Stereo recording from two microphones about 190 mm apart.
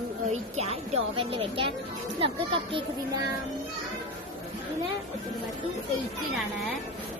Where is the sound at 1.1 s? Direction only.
30° right (ahead or behind).